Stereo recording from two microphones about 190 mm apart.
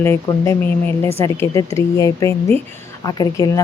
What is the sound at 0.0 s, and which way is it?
Speech, 15° left (ahead or behind).